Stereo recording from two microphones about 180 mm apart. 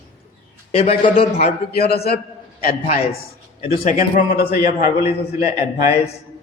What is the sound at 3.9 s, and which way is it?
A man's voice, 50° left (ahead or behind).